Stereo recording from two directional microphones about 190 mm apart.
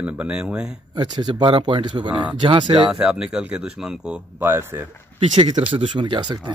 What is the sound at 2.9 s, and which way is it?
Speech, 5° right (ahead or behind).